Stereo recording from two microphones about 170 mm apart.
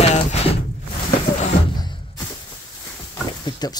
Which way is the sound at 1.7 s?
25° left (ahead or behind).